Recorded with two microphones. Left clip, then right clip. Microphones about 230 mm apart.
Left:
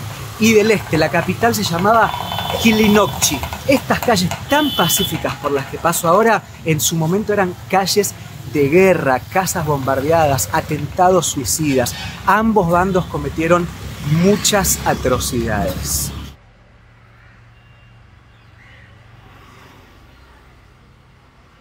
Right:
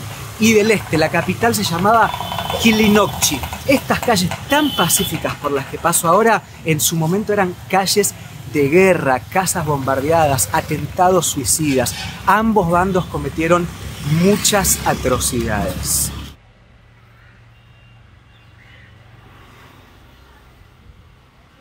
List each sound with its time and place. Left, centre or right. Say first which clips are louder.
0.4 s speech: left 1 dB; centre
13.8 s vehicle: even; right
14.4 s speech: even; centre